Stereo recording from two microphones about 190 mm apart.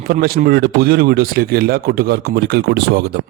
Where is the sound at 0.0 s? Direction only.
55° right (ahead or behind).